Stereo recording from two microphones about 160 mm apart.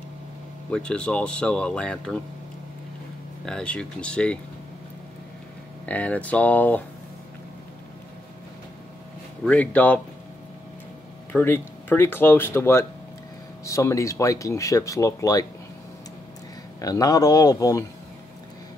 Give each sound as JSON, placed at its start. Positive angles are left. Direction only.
{"t": 0.7, "sound": "speech", "side_deg": 5}
{"t": 3.4, "sound": "speech", "side_deg": 5}
{"t": 5.9, "sound": "speech", "side_deg": 10}
{"t": 9.5, "sound": "speech", "side_deg": 10}
{"t": 11.3, "sound": "speech", "side_deg": 15}
{"t": 16.8, "sound": "speech", "side_deg": 20}